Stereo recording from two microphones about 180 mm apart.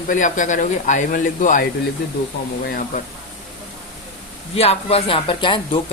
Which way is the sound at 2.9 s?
45° left (ahead or behind).